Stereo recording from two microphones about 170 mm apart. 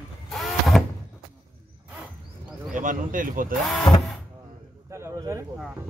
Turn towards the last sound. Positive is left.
turn(degrees=-20)  # may be behind; listen again after turning